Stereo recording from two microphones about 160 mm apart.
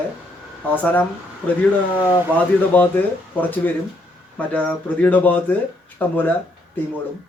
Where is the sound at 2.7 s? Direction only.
10° left (ahead or behind).